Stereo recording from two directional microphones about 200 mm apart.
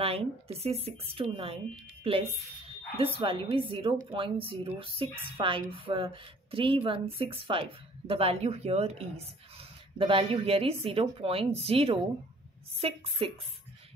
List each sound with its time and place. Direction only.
0.0 s speech: 30° right (ahead or behind)